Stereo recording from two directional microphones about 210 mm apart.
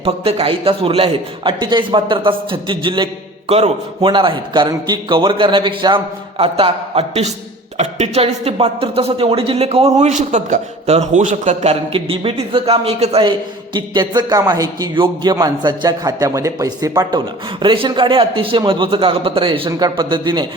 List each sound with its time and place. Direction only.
0.0 s a man's voice: 30° right (ahead or behind)